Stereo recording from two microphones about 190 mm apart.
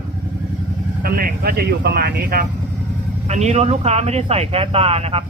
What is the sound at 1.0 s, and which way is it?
Speech, 50° right (ahead or behind).